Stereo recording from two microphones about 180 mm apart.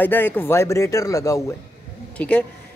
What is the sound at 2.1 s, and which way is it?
Speech, 10° left (ahead or behind).